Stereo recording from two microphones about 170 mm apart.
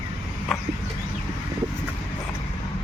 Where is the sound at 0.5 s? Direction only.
Centre (ahead or behind).